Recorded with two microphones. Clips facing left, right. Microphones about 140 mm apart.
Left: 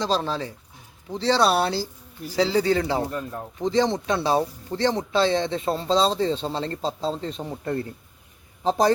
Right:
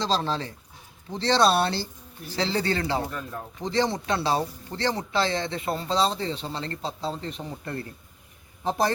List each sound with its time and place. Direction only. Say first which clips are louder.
0.0 s speech: left 2 dB; 10° left (ahead or behind)
3.1 s a man's voice: left 4 dB; 25° left (ahead or behind)
3.7 s a man's voice: left 3 dB; 15° left (ahead or behind)